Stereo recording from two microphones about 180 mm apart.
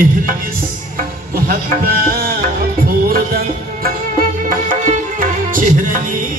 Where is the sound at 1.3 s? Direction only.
55° right (ahead or behind).